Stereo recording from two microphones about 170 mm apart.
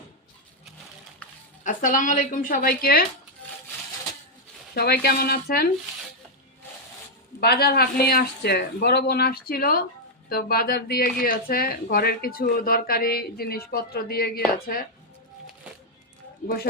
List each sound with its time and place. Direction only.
1.6 s speech: 50° left (ahead or behind)
4.7 s speech: 70° left (ahead or behind)
7.3 s speech: 65° left (ahead or behind)